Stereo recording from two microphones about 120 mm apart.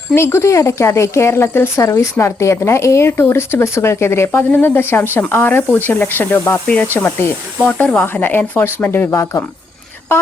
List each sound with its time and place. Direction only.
0.1 s a woman's voice: 20° left (ahead or behind)